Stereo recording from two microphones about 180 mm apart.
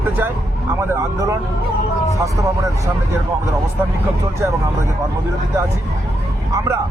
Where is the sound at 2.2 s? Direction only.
20° right (ahead or behind).